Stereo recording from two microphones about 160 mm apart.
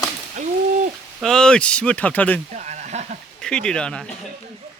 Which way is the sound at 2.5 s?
50° right (ahead or behind).